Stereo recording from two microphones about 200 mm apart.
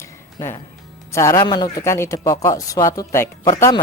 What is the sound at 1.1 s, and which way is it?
Speech, 15° left (ahead or behind).